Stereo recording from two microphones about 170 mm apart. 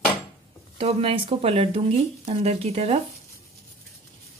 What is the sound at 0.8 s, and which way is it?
A woman's voice, 35° right (ahead or behind).